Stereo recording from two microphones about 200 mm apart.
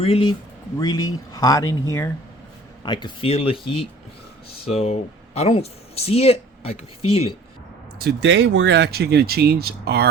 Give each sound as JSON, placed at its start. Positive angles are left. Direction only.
{"t": 0.0, "sound": "speech", "side_deg": 25}
{"t": 2.8, "sound": "speech", "side_deg": 20}
{"t": 7.9, "sound": "speech", "side_deg": -55}